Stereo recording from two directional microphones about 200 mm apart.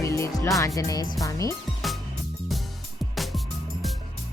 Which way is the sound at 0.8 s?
15° left (ahead or behind).